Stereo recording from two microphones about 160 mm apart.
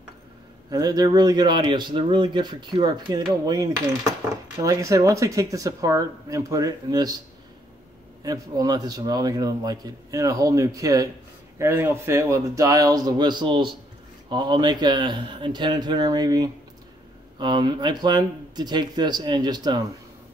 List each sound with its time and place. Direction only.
0.7 s a man's voice: 25° right (ahead or behind)
8.2 s a man's voice: 25° right (ahead or behind)